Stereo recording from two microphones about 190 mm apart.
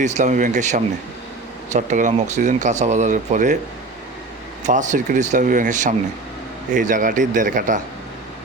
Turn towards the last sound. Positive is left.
turn(degrees=-45)  # may be behind; listen again after turning